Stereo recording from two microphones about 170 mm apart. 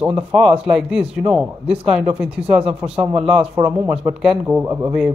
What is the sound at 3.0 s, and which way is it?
Speech, 35° right (ahead or behind).